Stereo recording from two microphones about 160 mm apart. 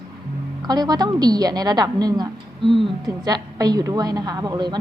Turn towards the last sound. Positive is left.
turn(degrees=-25)  # may be behind; listen again after turning